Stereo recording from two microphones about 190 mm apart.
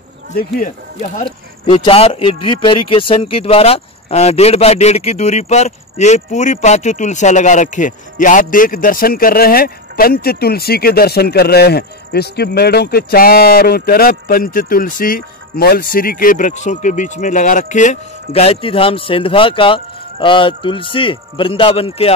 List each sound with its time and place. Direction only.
0.4 s speech: 45° left (ahead or behind)
1.2 s speech: 25° left (ahead or behind)